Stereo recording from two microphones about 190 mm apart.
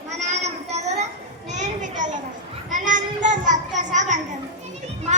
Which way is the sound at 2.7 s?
45° right (ahead or behind).